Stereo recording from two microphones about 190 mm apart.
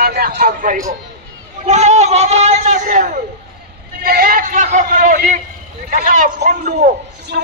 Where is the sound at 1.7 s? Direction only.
35° right (ahead or behind).